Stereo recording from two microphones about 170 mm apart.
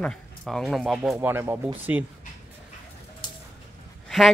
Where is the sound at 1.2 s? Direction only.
15° right (ahead or behind).